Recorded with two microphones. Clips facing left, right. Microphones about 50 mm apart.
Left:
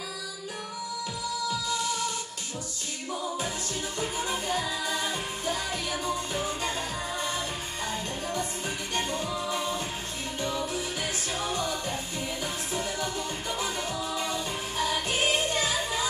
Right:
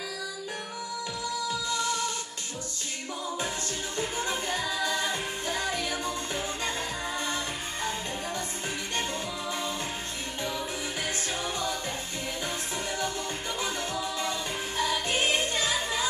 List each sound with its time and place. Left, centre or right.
4.0 s music: centre
8.9 s music: left
10.4 s music: centre
14.3 s music: centre